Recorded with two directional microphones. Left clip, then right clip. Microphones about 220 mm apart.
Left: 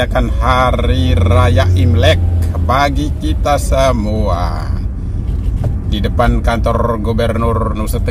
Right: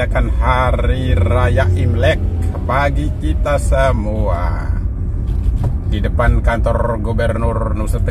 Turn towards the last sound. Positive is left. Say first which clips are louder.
# left 4 dB
turn(degrees=15)  # may be behind; listen again after turning